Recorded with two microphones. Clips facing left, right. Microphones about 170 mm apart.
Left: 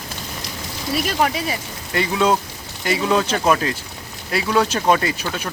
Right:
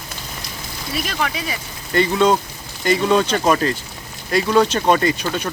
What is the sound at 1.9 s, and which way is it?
Speech, 5° left (ahead or behind).